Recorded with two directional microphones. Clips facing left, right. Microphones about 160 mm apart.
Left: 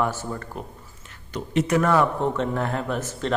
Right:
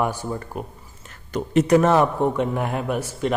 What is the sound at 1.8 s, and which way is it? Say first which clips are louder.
A man's voice: right 3 dB; 20° right (ahead or behind).